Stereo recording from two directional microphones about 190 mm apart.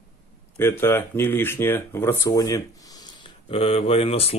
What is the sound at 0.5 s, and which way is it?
Speech, 10° left (ahead or behind).